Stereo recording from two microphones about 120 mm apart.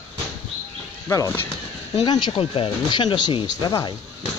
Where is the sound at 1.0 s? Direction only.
25° left (ahead or behind).